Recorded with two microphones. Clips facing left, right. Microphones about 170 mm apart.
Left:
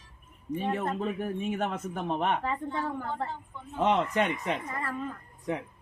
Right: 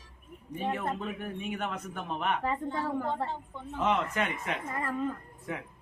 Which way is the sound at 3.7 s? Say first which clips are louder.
Left 3 dB; 35° left (ahead or behind).